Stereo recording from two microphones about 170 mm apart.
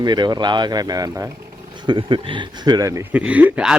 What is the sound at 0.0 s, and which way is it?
Speech, 25° right (ahead or behind).